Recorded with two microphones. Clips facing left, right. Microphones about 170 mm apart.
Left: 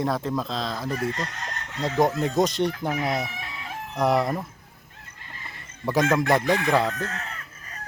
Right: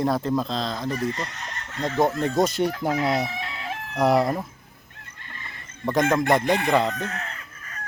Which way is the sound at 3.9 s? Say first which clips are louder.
Right 2 dB; centre (ahead or behind).